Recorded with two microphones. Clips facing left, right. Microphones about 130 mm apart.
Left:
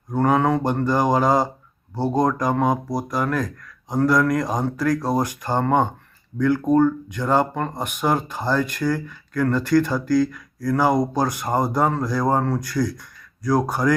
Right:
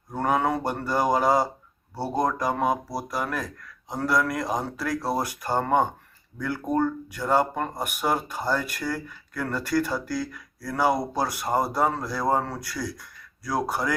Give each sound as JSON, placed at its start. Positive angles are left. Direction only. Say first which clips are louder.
{"t": 0.2, "sound": "speech", "louder": "left 5 dB", "side_deg": -10}
{"t": 2.0, "sound": "speech", "louder": "left 6 dB", "side_deg": 20}
{"t": 2.2, "sound": "speech", "louder": "left 3 dB", "side_deg": -5}
{"t": 6.3, "sound": "speech", "louder": "left 12 dB", "side_deg": 35}
{"t": 6.7, "sound": "speech", "louder": "left 7 dB", "side_deg": 0}